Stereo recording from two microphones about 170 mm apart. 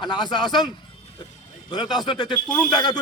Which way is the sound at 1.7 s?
25° left (ahead or behind).